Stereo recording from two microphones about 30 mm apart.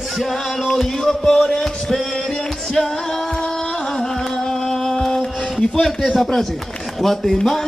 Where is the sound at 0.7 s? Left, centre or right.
Centre.